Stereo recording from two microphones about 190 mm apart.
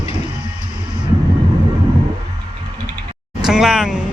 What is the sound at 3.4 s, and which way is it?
Speech, 5° right (ahead or behind).